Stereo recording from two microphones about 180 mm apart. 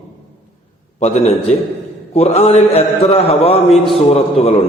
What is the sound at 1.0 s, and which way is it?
A man's voice, 35° left (ahead or behind).